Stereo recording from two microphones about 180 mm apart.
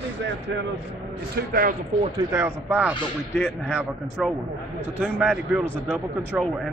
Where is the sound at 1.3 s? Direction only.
55° right (ahead or behind).